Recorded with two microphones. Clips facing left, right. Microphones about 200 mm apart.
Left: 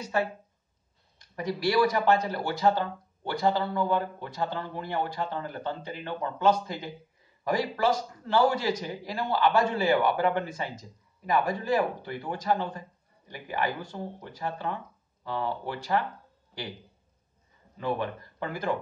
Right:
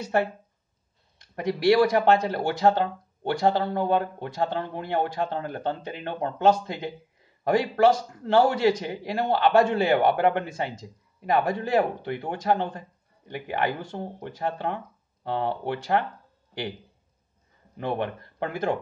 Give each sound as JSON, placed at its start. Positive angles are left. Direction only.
{"t": 1.1, "sound": "a sound", "side_deg": -65}
{"t": 1.9, "sound": "speech", "side_deg": -60}
{"t": 17.7, "sound": "speech", "side_deg": -60}